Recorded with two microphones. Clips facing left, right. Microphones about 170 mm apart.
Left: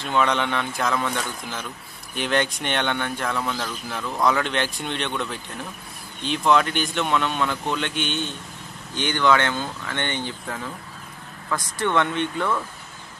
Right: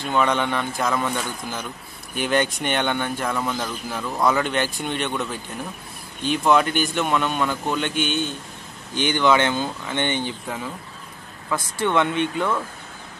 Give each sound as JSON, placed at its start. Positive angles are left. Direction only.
{"t": 0.0, "sound": "speech", "side_deg": -5}
{"t": 9.1, "sound": "speech", "side_deg": -15}